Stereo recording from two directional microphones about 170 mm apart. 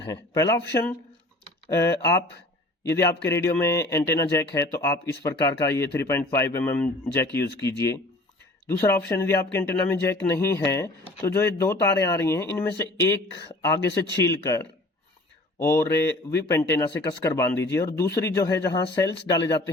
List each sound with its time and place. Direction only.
0.0 s speech: 20° left (ahead or behind)
1.7 s a man's voice: 15° left (ahead or behind)